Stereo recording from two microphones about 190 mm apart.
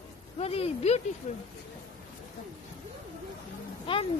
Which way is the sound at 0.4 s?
30° left (ahead or behind).